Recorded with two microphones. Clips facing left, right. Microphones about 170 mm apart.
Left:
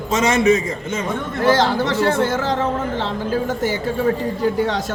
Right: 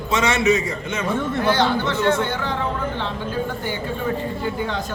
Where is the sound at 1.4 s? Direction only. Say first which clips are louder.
Left 5 dB; 90° left.